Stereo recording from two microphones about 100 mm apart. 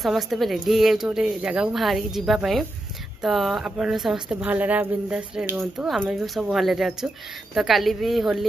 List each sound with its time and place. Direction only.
0.0 s a woman's voice: centre (ahead or behind)
4.5 s a woman's voice: 15° right (ahead or behind)